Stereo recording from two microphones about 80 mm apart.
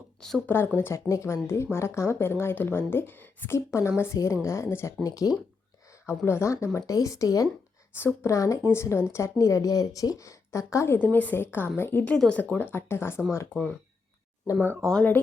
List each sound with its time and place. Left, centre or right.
0.4 s speech: left
0.9 s a woman's voice: left
3.7 s a woman's voice: left
5.0 s speech: left
6.1 s a woman's voice: left
7.9 s speech: left
8.3 s a woman's voice: left
13.5 s speech: centre
14.6 s speech: right